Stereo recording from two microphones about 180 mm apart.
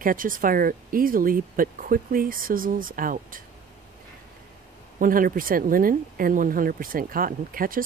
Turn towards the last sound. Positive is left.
turn(degrees=-50)  # may be behind; listen again after turning